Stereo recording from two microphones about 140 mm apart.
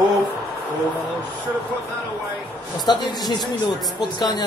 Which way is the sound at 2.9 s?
30° left (ahead or behind).